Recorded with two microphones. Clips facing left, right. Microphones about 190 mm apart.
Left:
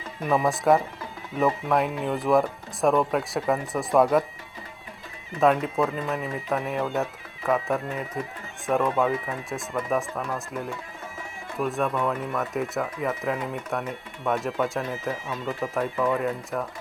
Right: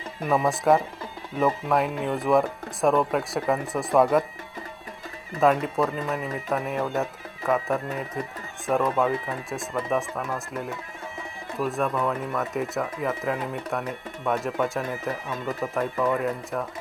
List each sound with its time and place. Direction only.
0.2 s speech: centre (ahead or behind)
5.4 s speech: centre (ahead or behind)